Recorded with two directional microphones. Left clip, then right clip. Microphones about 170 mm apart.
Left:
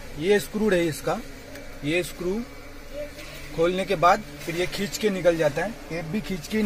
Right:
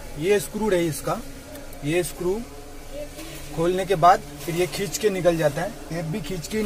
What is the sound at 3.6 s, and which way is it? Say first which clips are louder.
A man's voice: right 3 dB; 15° left (ahead or behind).